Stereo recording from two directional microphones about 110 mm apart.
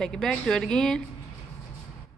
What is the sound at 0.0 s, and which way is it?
Speech, 5° left (ahead or behind).